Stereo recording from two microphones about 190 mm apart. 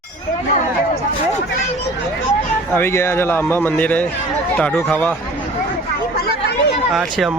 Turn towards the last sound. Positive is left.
turn(degrees=0)  # may be behind; listen again after turning